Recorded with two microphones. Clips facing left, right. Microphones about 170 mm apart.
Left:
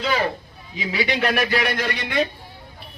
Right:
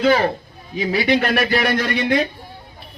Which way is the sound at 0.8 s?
45° right (ahead or behind).